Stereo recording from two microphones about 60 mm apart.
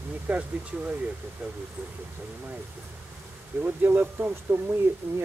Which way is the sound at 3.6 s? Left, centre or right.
Right.